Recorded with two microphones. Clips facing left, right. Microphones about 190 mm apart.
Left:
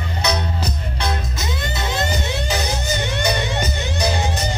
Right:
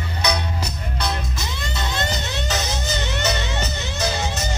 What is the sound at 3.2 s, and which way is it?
Music, 15° left (ahead or behind).